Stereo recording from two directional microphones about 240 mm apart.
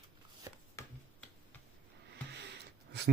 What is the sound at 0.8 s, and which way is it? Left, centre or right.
Finger snapping, centre.